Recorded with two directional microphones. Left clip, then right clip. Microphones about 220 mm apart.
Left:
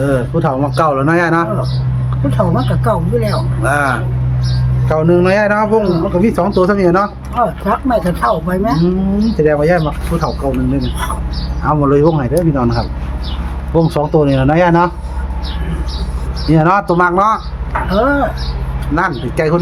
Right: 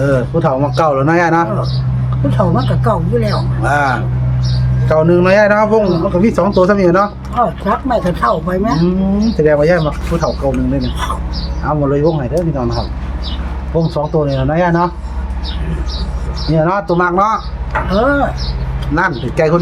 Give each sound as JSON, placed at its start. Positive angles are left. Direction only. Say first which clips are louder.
{"t": 0.0, "sound": "speech", "louder": "right 1 dB", "side_deg": 0}
{"t": 11.6, "sound": "speech", "louder": "left 2 dB", "side_deg": 15}
{"t": 16.6, "sound": "speech", "louder": "left 2 dB", "side_deg": 30}